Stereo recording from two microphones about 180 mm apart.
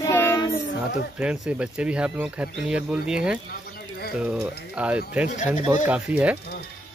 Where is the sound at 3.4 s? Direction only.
60° left (ahead or behind).